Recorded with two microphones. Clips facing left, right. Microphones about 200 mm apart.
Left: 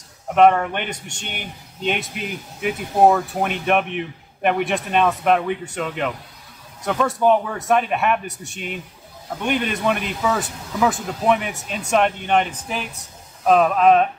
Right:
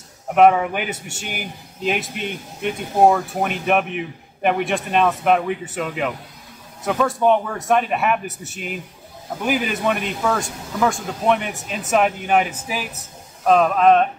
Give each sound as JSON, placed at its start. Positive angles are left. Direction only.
{"t": 0.3, "sound": "speech", "side_deg": -5}